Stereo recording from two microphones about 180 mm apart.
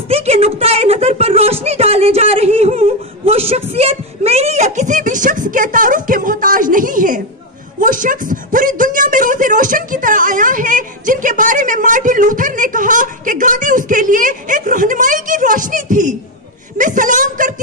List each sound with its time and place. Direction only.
0.1 s speech: 35° right (ahead or behind)